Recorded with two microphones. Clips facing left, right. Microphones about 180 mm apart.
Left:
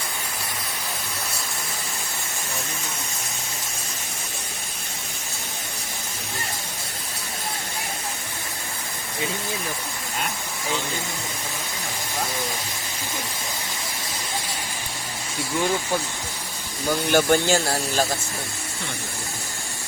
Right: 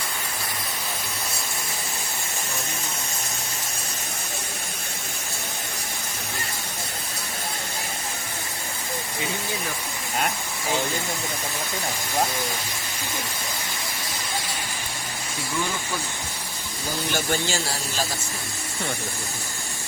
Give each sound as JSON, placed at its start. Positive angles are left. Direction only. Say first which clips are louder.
{"t": 17.1, "sound": "speech", "louder": "left 8 dB", "side_deg": 50}